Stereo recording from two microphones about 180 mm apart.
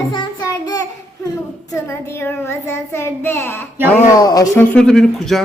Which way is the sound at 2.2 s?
15° left (ahead or behind).